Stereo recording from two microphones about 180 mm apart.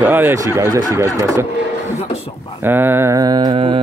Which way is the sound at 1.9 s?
35° left (ahead or behind).